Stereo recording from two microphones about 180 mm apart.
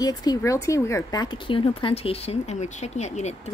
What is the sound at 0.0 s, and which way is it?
A woman's voice, 20° left (ahead or behind).